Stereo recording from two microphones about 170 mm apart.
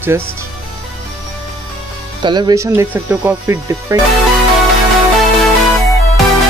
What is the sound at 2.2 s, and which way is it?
Speech, 25° right (ahead or behind).